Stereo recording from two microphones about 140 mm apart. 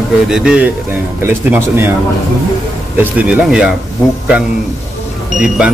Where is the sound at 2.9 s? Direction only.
10° right (ahead or behind).